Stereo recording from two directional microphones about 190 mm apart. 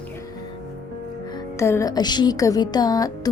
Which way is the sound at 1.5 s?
15° left (ahead or behind).